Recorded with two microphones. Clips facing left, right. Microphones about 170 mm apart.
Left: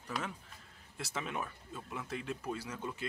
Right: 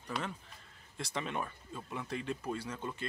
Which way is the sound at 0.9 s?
5° left (ahead or behind).